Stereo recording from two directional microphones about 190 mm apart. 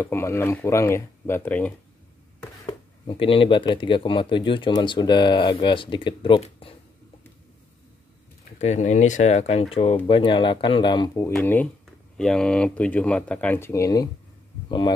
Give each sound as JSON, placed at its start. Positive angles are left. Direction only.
{"t": 0.0, "sound": "speech", "side_deg": 15}
{"t": 2.6, "sound": "speech", "side_deg": 30}
{"t": 8.5, "sound": "speech", "side_deg": 35}